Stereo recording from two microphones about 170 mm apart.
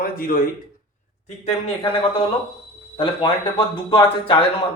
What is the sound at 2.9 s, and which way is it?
A man's voice, 30° left (ahead or behind).